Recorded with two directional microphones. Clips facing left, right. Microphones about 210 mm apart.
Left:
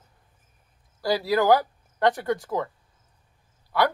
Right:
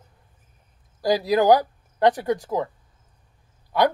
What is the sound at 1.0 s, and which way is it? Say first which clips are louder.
Speech: right 3 dB; 15° right (ahead or behind).